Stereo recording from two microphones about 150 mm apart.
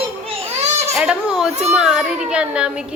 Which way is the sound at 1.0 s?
5° right (ahead or behind).